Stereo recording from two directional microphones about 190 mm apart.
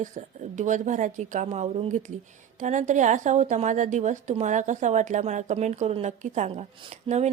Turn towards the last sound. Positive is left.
turn(degrees=-35)  # may be behind; listen again after turning